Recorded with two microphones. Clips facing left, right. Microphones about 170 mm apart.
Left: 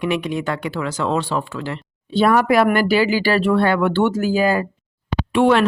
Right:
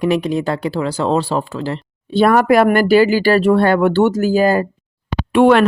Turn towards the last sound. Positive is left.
turn(degrees=-55)  # may be behind; listen again after turning